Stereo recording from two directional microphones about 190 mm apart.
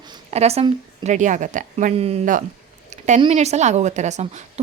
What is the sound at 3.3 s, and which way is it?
Speech, 35° right (ahead or behind).